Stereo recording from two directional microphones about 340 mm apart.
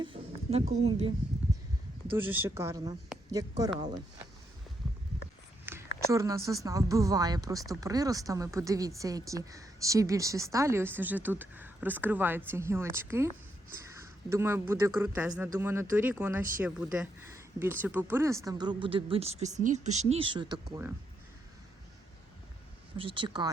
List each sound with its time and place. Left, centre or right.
0.0 s a sound: centre
2.1 s speech: centre
5.6 s speech: centre
23.0 s speech: centre